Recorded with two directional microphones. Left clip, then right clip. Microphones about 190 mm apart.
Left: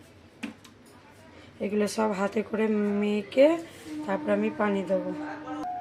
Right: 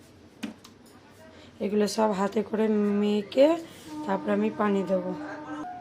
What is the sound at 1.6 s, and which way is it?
Speech, 5° right (ahead or behind).